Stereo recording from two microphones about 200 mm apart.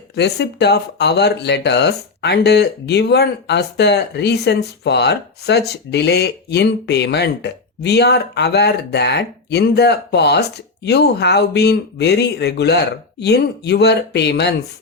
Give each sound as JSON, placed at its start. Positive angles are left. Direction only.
{"t": 0.2, "sound": "speech", "side_deg": 60}